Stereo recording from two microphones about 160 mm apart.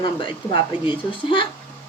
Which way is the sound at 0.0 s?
30° left (ahead or behind).